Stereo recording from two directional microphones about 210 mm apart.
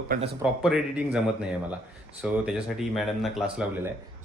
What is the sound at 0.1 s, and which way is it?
Speech, 40° right (ahead or behind).